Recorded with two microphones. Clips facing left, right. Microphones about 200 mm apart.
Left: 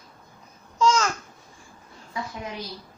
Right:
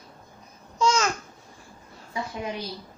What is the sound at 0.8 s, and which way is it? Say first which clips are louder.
Babbling: left 1 dB; 10° right (ahead or behind).